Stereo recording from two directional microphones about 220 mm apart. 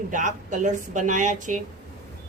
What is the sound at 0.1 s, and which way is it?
A woman's voice, 35° right (ahead or behind).